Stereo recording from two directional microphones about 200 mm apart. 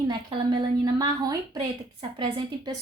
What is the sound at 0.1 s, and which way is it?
A woman's voice, 20° right (ahead or behind).